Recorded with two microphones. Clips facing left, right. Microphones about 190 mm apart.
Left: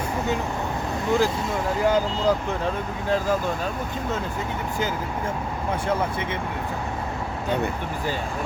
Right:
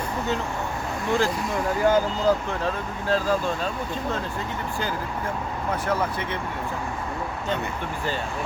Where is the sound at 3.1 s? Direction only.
15° left (ahead or behind).